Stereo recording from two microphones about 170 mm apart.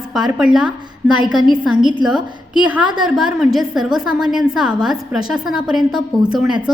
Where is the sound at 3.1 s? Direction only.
5° right (ahead or behind).